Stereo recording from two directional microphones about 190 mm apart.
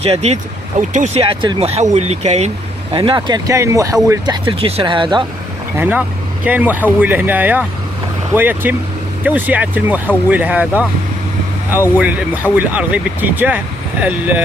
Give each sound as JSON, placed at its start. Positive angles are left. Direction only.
{"t": 0.0, "sound": "speech", "side_deg": -35}
{"t": 5.8, "sound": "speech", "side_deg": -10}
{"t": 12.5, "sound": "speech", "side_deg": -10}